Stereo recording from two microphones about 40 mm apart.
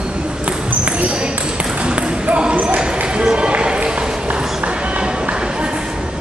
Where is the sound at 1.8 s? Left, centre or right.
Right.